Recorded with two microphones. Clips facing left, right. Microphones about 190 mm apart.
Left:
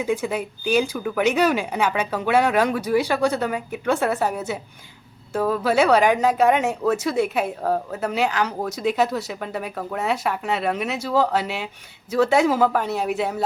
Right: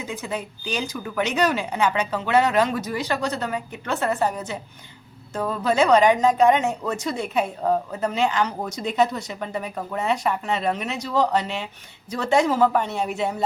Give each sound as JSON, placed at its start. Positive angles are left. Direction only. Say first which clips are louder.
{"t": 0.0, "sound": "a woman's voice", "louder": "left 6 dB", "side_deg": 10}